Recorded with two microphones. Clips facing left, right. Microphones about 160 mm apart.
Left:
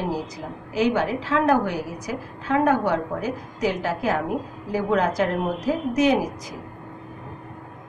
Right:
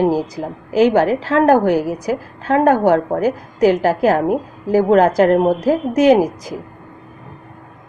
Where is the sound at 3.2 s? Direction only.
90° right; by 5.5 s 60° right (ahead or behind).